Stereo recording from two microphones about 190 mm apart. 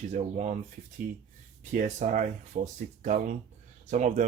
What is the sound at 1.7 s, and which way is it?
Speech, 40° right (ahead or behind).